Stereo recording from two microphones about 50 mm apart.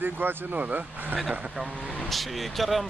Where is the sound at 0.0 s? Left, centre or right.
Right.